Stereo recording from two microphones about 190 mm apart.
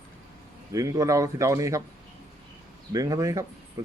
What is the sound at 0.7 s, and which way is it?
A man's voice, 15° right (ahead or behind).